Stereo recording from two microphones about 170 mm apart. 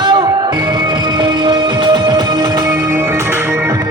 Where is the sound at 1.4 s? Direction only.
30° right (ahead or behind).